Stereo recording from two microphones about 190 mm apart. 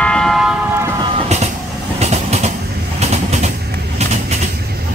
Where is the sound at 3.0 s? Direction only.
35° right (ahead or behind).